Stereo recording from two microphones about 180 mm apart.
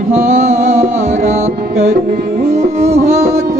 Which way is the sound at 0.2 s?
40° right (ahead or behind).